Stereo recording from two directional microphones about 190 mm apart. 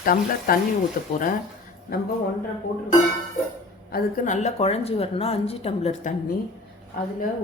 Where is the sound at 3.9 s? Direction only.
50° left (ahead or behind); by 6.1 s 35° left (ahead or behind).